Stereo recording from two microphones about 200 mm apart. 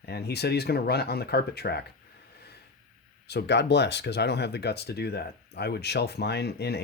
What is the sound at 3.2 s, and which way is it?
Speech, 55° left (ahead or behind).